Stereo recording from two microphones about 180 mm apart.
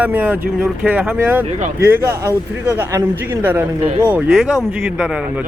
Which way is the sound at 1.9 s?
15° right (ahead or behind).